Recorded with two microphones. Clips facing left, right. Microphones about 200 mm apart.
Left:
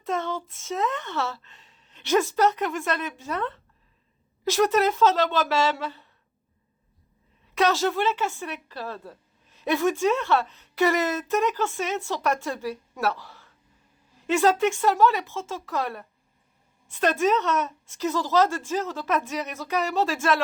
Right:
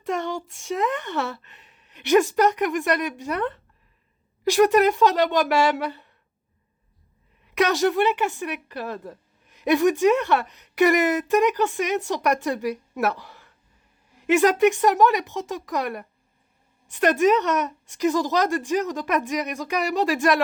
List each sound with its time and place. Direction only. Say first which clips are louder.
0.1 s a child's voice: right 2 dB; 15° right (ahead or behind)
1.5 s a sound: right 3 dB; 15° right (ahead or behind)
2.0 s a woman's voice: right 4 dB; 15° right (ahead or behind)
7.5 s a woman's voice: right 2 dB; 15° right (ahead or behind)